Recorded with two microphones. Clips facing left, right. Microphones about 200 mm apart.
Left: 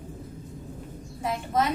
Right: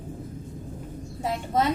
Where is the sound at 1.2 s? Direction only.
25° right (ahead or behind).